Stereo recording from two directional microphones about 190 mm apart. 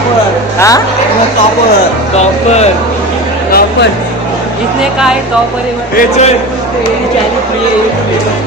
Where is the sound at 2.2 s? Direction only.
35° left (ahead or behind).